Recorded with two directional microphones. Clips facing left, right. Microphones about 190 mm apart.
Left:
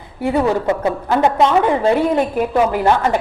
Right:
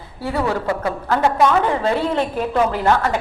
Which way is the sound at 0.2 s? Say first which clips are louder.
Left 5 dB; 20° left (ahead or behind).